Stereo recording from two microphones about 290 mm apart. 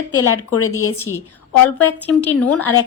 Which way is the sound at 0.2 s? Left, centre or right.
Left.